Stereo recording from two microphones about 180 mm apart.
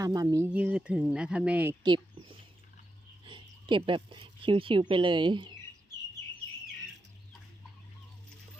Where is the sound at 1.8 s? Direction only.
25° right (ahead or behind).